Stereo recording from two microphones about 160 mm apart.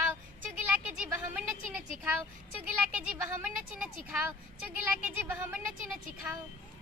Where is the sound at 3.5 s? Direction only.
5° right (ahead or behind).